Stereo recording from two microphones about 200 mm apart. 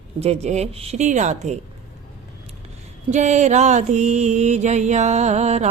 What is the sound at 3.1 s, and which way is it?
Mantra, 35° right (ahead or behind).